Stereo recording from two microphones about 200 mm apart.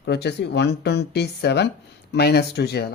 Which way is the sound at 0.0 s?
55° left (ahead or behind).